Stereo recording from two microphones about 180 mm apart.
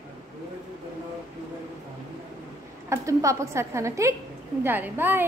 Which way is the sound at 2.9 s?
15° right (ahead or behind).